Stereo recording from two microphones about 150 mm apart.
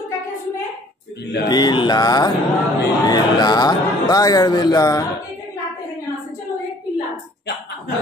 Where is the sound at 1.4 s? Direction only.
25° left (ahead or behind).